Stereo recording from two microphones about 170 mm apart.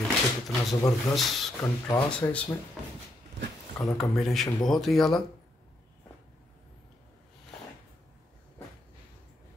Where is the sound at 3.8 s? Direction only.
5° left (ahead or behind).